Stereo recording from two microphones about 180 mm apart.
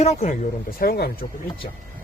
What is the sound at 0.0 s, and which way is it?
Speech, 40° left (ahead or behind).